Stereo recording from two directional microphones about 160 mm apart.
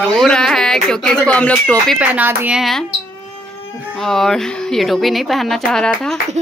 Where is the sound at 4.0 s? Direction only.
Centre (ahead or behind).